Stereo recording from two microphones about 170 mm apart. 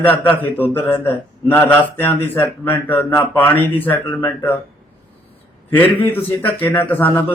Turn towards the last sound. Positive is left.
turn(degrees=10)  # may be behind; listen again after turning